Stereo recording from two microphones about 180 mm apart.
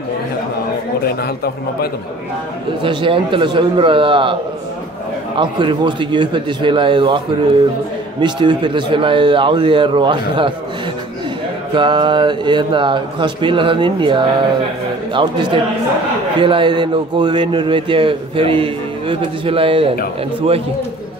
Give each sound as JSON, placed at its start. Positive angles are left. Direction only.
{"t": 1.0, "sound": "a man's voice", "side_deg": 60}
{"t": 2.8, "sound": "a man's voice", "side_deg": -30}
{"t": 5.4, "sound": "a man's voice", "side_deg": -25}
{"t": 8.2, "sound": "a man's voice", "side_deg": -25}
{"t": 11.7, "sound": "a man's voice", "side_deg": -25}